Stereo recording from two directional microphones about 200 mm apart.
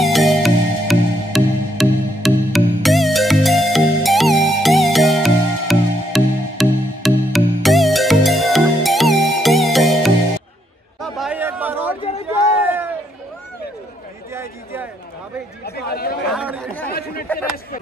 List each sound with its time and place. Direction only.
0.0 s music: centre (ahead or behind)
11.0 s a sound: centre (ahead or behind)
14.3 s a sound: 10° right (ahead or behind)
15.6 s chatter: 50° left (ahead or behind)
16.3 s chatter: 5° right (ahead or behind)
16.9 s chatter: 50° left (ahead or behind)